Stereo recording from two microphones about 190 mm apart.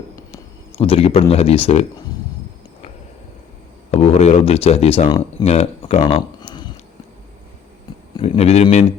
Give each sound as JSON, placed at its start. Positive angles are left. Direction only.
{"t": 0.3, "sound": "speech", "side_deg": 30}
{"t": 3.9, "sound": "speech", "side_deg": 35}
{"t": 5.5, "sound": "a sound", "side_deg": 35}
{"t": 8.1, "sound": "speech", "side_deg": 30}